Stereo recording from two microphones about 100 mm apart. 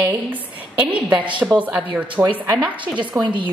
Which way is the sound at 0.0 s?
15° right (ahead or behind).